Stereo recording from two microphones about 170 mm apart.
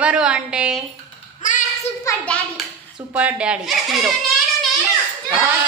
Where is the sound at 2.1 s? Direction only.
20° left (ahead or behind).